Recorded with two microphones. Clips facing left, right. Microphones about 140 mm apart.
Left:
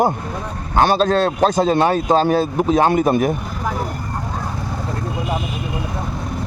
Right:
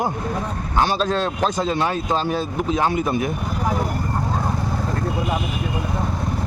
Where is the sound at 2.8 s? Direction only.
60° left (ahead or behind).